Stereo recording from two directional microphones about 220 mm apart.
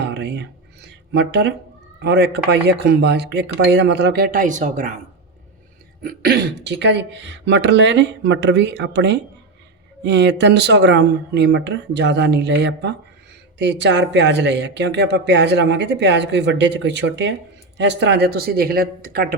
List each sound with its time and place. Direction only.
0.0 s a sound: 50° right (ahead or behind)
1.1 s speech: 50° right (ahead or behind); by 4.9 s 35° right (ahead or behind)
6.0 s speech: 40° right (ahead or behind)